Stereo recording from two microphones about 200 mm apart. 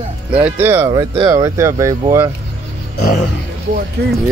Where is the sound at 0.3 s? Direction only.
5° right (ahead or behind).